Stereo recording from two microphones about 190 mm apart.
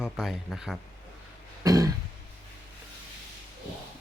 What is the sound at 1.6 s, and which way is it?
Throat clearing, 15° right (ahead or behind).